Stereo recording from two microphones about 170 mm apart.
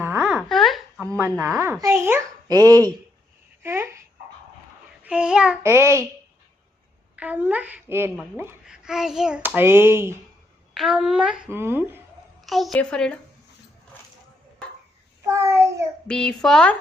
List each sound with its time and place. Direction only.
0.0 s a sound: 10° right (ahead or behind)
1.2 s a child's voice: 15° right (ahead or behind)
5.0 s a child's voice: 5° right (ahead or behind)
5.6 s a child's voice: 15° right (ahead or behind)
7.2 s a child's voice: 10° right (ahead or behind)
8.6 s a child's voice: 5° right (ahead or behind)
10.8 s a child's voice: 5° right (ahead or behind)
12.4 s a woman's voice: centre (ahead or behind)
15.3 s a child's voice: 15° right (ahead or behind)
16.0 s a child's voice: 5° left (ahead or behind)